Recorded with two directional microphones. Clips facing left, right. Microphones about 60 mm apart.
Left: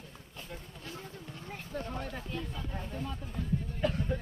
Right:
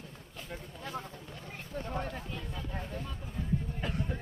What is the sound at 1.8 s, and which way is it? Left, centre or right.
Chatter, right.